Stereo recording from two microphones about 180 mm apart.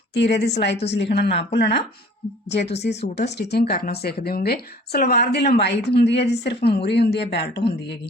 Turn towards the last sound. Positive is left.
turn(degrees=70)  # may be behind; listen again after turning